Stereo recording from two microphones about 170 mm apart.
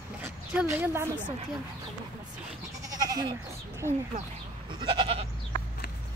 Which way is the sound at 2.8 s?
20° right (ahead or behind).